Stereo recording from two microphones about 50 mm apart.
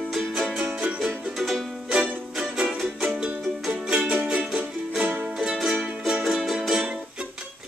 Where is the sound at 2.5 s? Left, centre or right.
Centre.